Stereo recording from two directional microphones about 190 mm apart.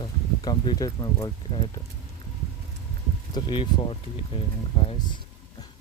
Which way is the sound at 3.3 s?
25° left (ahead or behind).